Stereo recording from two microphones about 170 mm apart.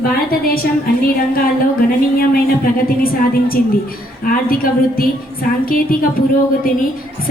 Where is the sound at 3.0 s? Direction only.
60° left (ahead or behind).